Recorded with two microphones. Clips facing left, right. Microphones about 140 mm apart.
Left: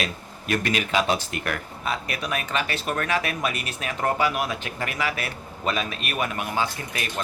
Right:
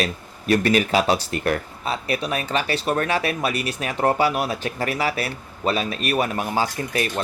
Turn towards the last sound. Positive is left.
turn(degrees=-35)  # may be behind; listen again after turning